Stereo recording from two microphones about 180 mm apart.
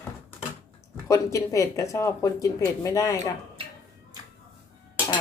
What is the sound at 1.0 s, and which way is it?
Speech, 15° left (ahead or behind).